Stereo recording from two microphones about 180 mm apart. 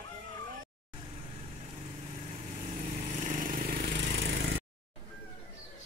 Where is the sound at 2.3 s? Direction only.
45° right (ahead or behind).